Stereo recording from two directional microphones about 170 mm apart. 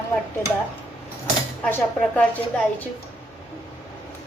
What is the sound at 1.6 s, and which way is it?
A woman's voice, 10° left (ahead or behind).